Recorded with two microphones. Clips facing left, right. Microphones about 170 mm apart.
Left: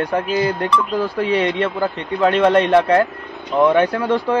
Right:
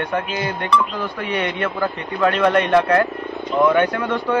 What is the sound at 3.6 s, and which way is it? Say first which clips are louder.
Speech: left 3 dB; 30° left (ahead or behind).